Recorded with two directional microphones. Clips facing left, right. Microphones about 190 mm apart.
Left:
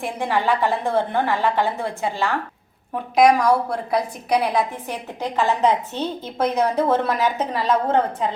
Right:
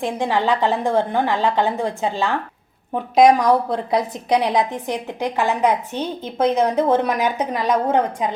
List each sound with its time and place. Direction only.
0.0 s a woman's voice: 15° right (ahead or behind)